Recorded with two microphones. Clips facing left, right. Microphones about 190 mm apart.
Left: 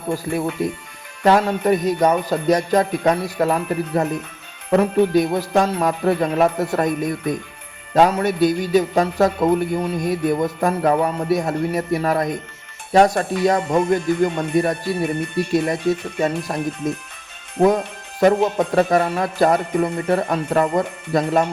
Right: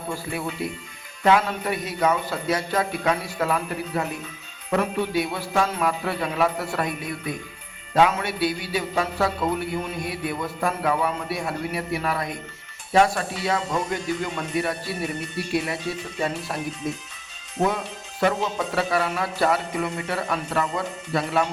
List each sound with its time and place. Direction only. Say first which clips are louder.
0.3 s a man's voice: left 7 dB; 45° left (ahead or behind)
14.4 s speech: left 7 dB; 45° left (ahead or behind)
17.7 s music: left 6 dB; 40° left (ahead or behind)
18.3 s a man's voice: left 8 dB; 60° left (ahead or behind); by 21.4 s 40° left (ahead or behind)